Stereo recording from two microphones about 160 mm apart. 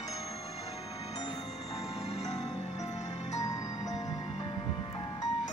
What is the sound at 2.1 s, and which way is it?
Music, 45° left (ahead or behind).